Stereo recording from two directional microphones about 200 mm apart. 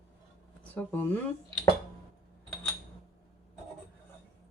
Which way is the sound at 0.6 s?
10° left (ahead or behind).